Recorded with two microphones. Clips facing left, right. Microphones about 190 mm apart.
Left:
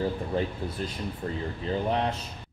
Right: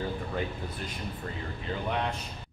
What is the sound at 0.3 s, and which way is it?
Speech, 30° left (ahead or behind).